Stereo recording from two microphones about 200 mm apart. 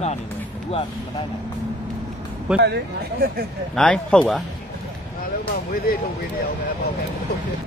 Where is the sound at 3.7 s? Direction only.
5° left (ahead or behind).